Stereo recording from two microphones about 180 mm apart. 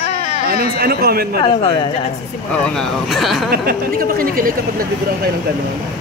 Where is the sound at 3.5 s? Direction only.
55° right (ahead or behind).